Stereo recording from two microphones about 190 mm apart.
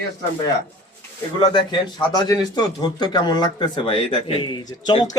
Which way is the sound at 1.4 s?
25° left (ahead or behind).